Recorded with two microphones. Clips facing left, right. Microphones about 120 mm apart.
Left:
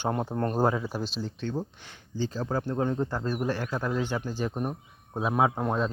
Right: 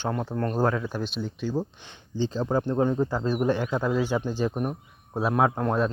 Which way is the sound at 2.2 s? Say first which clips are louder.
Right 4 dB; 20° right (ahead or behind).